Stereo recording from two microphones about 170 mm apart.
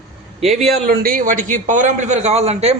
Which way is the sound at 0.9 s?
55° right (ahead or behind).